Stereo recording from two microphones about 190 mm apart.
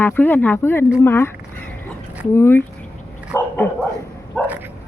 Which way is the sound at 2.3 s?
10° left (ahead or behind).